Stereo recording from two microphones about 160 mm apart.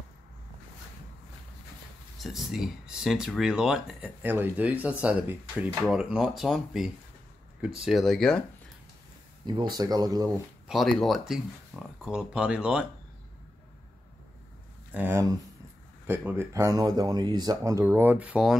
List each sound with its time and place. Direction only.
2.1 s speech: centre (ahead or behind)
9.5 s speech: 30° right (ahead or behind)
10.7 s speech: centre (ahead or behind)
15.0 s speech: 15° right (ahead or behind)